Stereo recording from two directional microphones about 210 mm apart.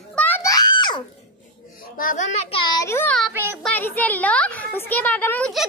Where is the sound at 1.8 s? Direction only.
40° left (ahead or behind).